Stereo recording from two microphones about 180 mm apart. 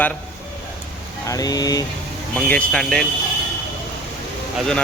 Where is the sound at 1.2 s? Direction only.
20° left (ahead or behind).